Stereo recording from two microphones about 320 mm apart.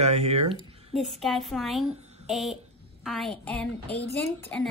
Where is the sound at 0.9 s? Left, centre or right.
Centre.